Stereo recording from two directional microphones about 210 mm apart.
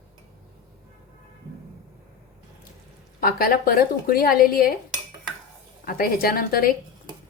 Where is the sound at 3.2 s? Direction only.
45° left (ahead or behind).